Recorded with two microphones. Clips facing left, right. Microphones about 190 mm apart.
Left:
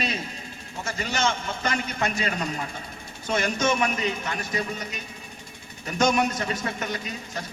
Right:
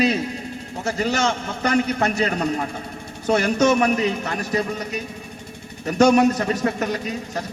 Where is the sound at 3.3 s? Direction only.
40° right (ahead or behind).